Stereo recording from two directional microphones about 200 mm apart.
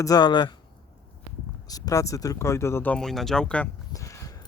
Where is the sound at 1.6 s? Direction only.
20° left (ahead or behind).